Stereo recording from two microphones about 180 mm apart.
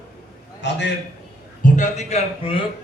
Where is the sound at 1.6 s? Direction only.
40° left (ahead or behind).